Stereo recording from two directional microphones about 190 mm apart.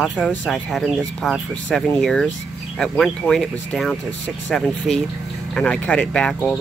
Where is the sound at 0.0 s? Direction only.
Centre (ahead or behind).